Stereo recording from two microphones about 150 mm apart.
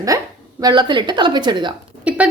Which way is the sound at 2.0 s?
10° right (ahead or behind).